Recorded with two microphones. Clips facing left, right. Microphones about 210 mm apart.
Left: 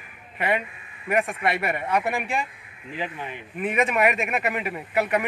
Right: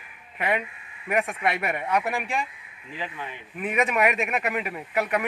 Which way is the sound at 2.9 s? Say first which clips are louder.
Left 3 dB; 15° left (ahead or behind).